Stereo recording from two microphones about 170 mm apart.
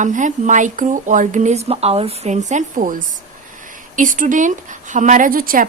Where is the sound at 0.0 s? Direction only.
45° right (ahead or behind).